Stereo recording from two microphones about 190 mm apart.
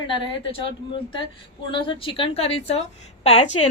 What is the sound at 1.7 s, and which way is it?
A woman's voice, 25° left (ahead or behind).